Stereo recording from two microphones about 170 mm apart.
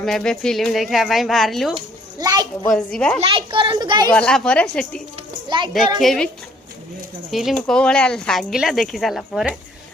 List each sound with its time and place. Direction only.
0.0 s speech: 5° left (ahead or behind)
1.7 s children playing: 25° right (ahead or behind)
2.6 s speech: 5° left (ahead or behind)
3.2 s speech: 30° right (ahead or behind)
4.1 s speech: 5° left (ahead or behind)
5.1 s a sound: 30° right (ahead or behind)
6.0 s speech: 5° left (ahead or behind)